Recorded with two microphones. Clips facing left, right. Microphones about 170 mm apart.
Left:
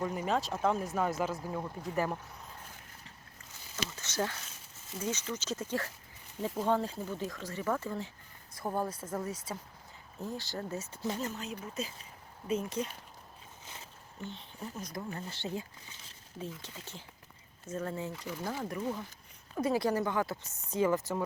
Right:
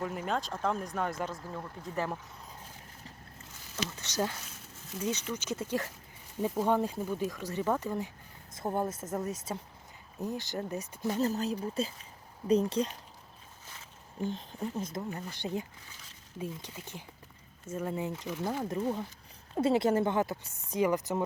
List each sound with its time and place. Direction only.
0.0 s speech: centre (ahead or behind)
4.0 s speech: 15° right (ahead or behind)
11.2 s speech: 35° right (ahead or behind)
14.2 s speech: 45° right (ahead or behind)
14.8 s speech: 25° right (ahead or behind)